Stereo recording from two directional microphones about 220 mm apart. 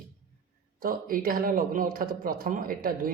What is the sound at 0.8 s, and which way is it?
Speech, 40° right (ahead or behind).